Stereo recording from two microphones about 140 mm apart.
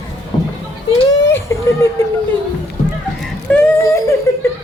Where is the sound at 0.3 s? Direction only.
30° left (ahead or behind).